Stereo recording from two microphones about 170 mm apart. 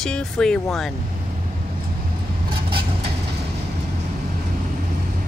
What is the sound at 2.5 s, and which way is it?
Vehicle, 30° right (ahead or behind).